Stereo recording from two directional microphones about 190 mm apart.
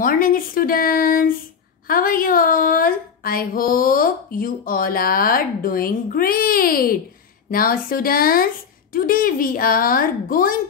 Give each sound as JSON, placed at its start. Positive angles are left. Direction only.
{"t": 0.0, "sound": "speech", "side_deg": 50}